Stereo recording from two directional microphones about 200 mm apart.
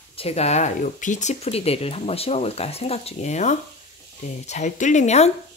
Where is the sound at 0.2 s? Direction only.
30° left (ahead or behind).